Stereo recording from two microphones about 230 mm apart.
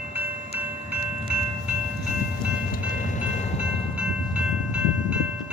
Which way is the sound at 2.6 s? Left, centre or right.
Left.